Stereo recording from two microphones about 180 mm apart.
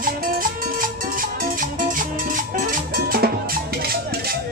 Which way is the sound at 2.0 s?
50° right (ahead or behind).